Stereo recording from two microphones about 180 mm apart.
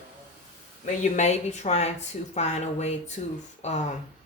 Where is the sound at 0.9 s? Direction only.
40° left (ahead or behind).